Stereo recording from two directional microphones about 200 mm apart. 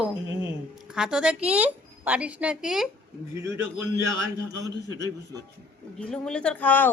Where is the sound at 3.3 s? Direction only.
15° right (ahead or behind).